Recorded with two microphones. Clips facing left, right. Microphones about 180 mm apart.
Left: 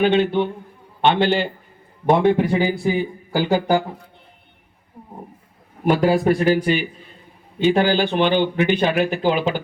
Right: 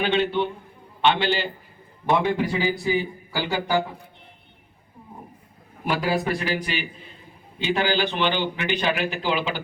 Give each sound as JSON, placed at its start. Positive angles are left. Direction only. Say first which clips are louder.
{"t": 0.0, "sound": "speech", "louder": "left 5 dB", "side_deg": 50}
{"t": 5.8, "sound": "speech", "louder": "left 8 dB", "side_deg": 45}